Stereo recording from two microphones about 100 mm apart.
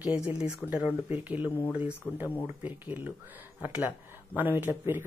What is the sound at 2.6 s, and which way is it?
Speech, 15° right (ahead or behind).